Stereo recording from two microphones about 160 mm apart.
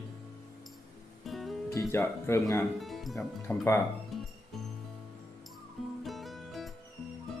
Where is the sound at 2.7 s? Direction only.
Centre (ahead or behind).